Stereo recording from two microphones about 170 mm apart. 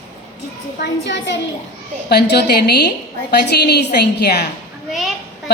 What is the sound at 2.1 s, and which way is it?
Speech, 75° left (ahead or behind).